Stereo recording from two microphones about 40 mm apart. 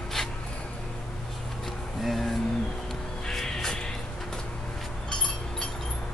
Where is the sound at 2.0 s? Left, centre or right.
Centre.